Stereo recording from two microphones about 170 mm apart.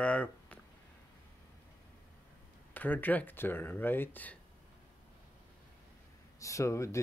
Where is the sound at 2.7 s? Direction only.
10° left (ahead or behind).